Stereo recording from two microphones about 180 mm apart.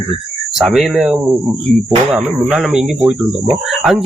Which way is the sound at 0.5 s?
Centre (ahead or behind).